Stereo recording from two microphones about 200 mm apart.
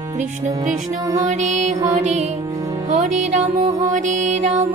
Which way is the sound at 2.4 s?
15° right (ahead or behind).